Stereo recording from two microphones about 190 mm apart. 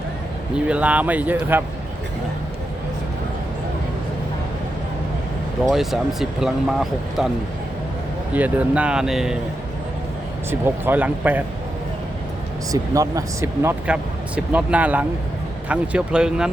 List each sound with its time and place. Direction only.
0.5 s speech: 5° right (ahead or behind)
5.7 s speech: centre (ahead or behind)
8.3 s speech: 10° right (ahead or behind)
10.5 s speech: 10° right (ahead or behind)
12.7 s speech: 15° right (ahead or behind)